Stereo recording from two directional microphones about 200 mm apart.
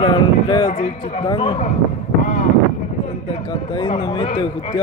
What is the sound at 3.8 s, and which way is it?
Speech, 25° left (ahead or behind).